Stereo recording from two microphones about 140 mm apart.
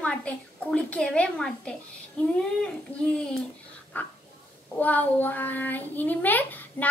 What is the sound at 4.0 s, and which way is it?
Speech, 10° left (ahead or behind).